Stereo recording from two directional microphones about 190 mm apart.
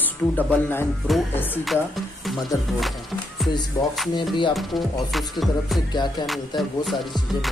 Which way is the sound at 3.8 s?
15° left (ahead or behind).